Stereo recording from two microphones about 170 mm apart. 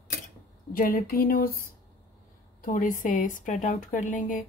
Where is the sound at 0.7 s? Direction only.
55° left (ahead or behind).